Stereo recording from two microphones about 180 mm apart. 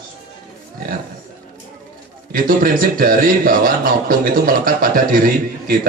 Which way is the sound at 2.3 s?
55° right (ahead or behind).